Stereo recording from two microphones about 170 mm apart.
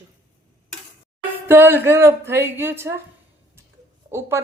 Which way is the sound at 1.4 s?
10° right (ahead or behind).